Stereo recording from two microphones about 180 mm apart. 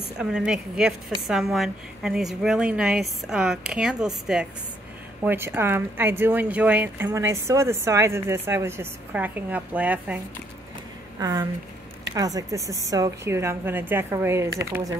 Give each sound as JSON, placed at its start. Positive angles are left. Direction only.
{"t": 0.2, "sound": "a woman's voice", "side_deg": -5}
{"t": 11.1, "sound": "a woman's voice", "side_deg": -20}